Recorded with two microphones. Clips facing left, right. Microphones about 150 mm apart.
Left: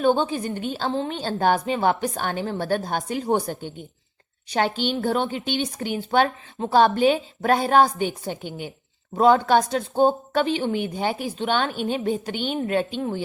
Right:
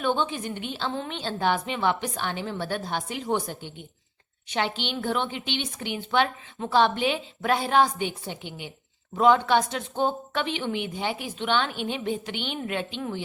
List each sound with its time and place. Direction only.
0.0 s a woman's voice: 40° left (ahead or behind)